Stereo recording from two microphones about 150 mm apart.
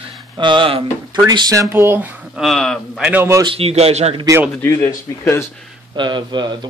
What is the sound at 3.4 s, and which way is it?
Speech, 40° right (ahead or behind).